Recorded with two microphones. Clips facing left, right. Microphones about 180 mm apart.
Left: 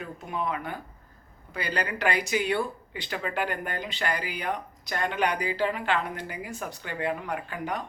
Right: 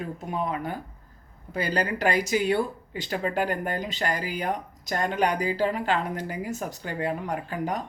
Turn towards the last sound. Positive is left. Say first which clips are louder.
# right 3 dB
turn(degrees=-40)  # may be behind; listen again after turning